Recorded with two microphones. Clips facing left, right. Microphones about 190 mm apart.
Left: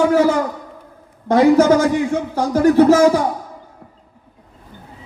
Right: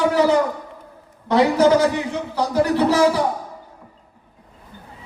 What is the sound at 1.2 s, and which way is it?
A man's voice, 45° left (ahead or behind).